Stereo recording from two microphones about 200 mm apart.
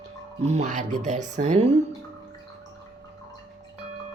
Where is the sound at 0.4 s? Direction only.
35° right (ahead or behind).